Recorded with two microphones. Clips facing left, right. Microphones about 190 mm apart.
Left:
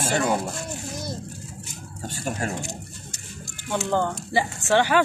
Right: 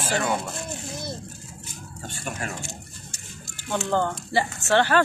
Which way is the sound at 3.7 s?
10° left (ahead or behind).